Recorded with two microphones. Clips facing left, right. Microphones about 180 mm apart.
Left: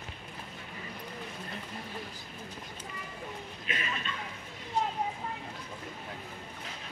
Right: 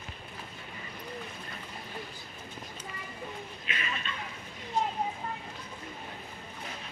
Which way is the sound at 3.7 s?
40° left (ahead or behind).